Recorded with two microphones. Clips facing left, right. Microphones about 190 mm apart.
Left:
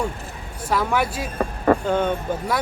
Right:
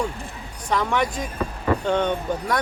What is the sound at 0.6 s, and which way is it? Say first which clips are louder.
Speech: left 1 dB; 5° left (ahead or behind).